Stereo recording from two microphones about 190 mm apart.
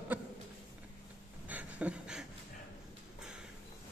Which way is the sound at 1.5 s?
5° right (ahead or behind).